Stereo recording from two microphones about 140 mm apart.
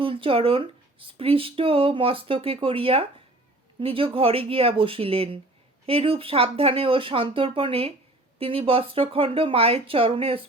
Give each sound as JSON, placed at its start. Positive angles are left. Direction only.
{"t": 0.0, "sound": "speech", "side_deg": -40}